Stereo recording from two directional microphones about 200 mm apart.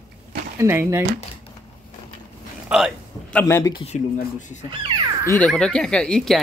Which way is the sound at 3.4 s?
15° left (ahead or behind).